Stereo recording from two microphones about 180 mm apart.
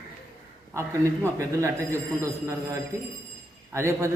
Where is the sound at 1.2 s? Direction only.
15° right (ahead or behind).